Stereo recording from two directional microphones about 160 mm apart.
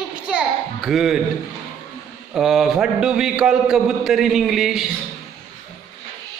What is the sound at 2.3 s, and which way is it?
A man's voice, centre (ahead or behind).